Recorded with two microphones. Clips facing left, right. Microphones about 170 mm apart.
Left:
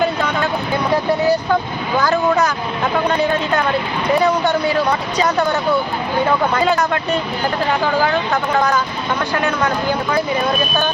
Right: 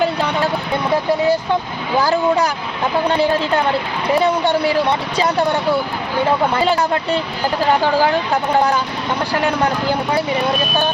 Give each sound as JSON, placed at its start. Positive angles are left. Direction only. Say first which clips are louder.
{"t": 2.0, "sound": "speech", "louder": "even", "side_deg": -30}
{"t": 8.3, "sound": "speech", "louder": "right 1 dB", "side_deg": -30}